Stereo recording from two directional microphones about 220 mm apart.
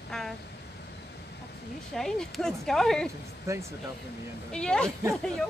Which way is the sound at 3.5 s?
15° right (ahead or behind).